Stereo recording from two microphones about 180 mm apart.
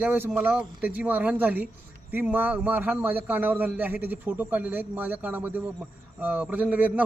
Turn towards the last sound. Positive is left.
turn(degrees=-10)  # may be behind; listen again after turning